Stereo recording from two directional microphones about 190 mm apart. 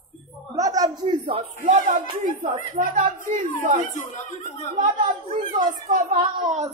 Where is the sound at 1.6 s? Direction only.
40° right (ahead or behind).